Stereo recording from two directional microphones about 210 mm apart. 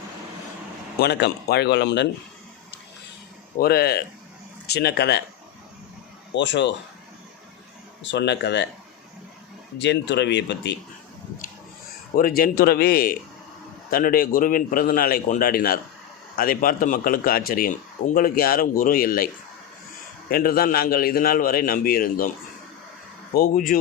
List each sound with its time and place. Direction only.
0.9 s a man's voice: 50° left (ahead or behind)
3.6 s a man's voice: 50° left (ahead or behind)
6.3 s speech: 55° left (ahead or behind)
8.0 s speech: 55° left (ahead or behind)
9.7 s speech: 55° left (ahead or behind)
12.4 s a man's voice: 45° left (ahead or behind)
20.3 s a man's voice: 45° left (ahead or behind)
23.3 s speech: 40° left (ahead or behind)